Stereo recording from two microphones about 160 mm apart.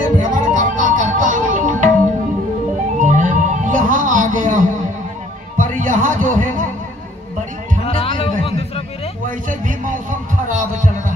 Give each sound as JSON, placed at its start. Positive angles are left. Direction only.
{"t": 0.2, "sound": "music", "side_deg": -55}
{"t": 3.0, "sound": "music", "side_deg": -50}
{"t": 7.8, "sound": "music", "side_deg": 35}
{"t": 9.5, "sound": "music", "side_deg": -55}
{"t": 10.5, "sound": "heart sounds", "side_deg": -55}